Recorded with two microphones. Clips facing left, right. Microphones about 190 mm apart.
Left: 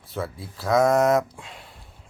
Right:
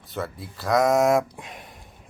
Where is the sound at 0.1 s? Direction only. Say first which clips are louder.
Even; centre (ahead or behind).